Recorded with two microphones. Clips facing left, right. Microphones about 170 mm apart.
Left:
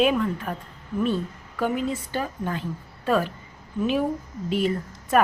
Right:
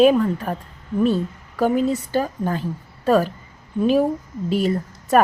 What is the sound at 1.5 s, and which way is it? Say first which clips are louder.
A woman's voice: right 6 dB; 40° right (ahead or behind).